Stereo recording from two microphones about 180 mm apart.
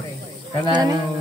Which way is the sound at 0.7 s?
20° right (ahead or behind).